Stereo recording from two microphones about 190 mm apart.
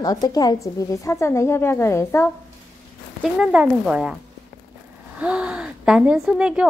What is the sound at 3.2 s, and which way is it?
Speech, 5° right (ahead or behind).